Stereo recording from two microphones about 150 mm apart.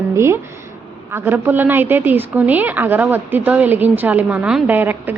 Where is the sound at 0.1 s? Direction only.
15° right (ahead or behind).